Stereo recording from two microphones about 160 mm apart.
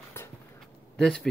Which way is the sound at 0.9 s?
Centre (ahead or behind).